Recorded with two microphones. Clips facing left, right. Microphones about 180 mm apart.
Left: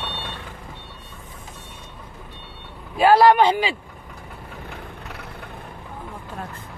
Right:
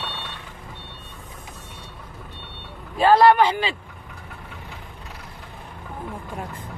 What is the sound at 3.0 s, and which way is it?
Speech, 10° left (ahead or behind).